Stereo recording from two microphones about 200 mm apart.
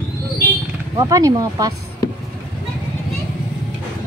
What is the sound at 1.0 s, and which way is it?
Speech, 15° right (ahead or behind).